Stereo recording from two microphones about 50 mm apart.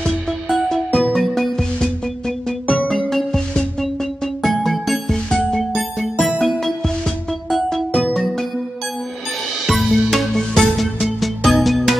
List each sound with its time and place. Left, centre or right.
0.0 s music: centre
9.7 s music: centre